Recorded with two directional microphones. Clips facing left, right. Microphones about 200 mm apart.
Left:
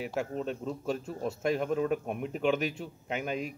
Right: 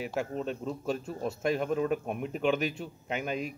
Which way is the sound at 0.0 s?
Centre (ahead or behind).